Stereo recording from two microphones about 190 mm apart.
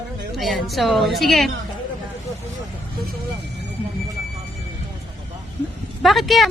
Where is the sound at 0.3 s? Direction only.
Centre (ahead or behind).